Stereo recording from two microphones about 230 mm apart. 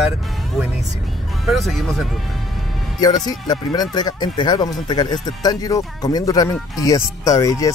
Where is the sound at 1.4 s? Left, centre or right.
Centre.